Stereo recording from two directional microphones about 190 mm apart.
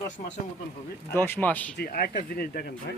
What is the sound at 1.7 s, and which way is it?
Speech, 55° left (ahead or behind).